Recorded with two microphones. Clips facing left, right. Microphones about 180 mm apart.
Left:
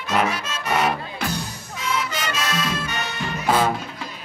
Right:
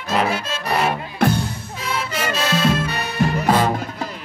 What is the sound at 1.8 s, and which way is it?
Music, 30° right (ahead or behind).